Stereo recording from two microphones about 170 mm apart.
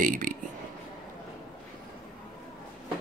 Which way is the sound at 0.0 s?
50° right (ahead or behind).